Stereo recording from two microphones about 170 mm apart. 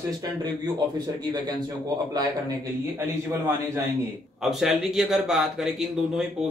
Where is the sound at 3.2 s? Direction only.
15° right (ahead or behind).